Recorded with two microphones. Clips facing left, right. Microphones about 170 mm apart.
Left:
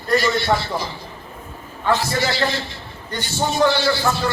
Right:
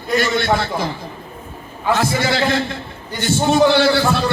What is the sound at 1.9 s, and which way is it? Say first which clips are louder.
A man's voice: right 4 dB; 55° right (ahead or behind).